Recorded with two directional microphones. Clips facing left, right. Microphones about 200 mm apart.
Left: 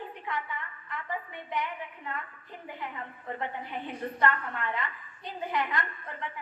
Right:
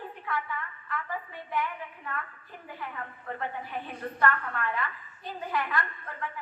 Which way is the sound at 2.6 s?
20° left (ahead or behind).